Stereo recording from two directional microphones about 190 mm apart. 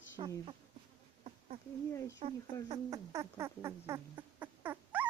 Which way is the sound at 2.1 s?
30° right (ahead or behind).